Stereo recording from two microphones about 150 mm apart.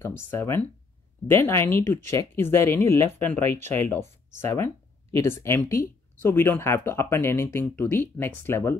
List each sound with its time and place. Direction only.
0.0 s speech: 15° left (ahead or behind)